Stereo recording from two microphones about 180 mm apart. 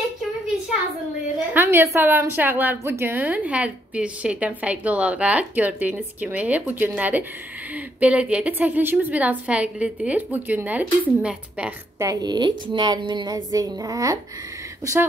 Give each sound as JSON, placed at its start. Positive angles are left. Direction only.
{"t": 1.5, "sound": "a woman's voice", "side_deg": -10}
{"t": 12.1, "sound": "a woman's voice", "side_deg": -20}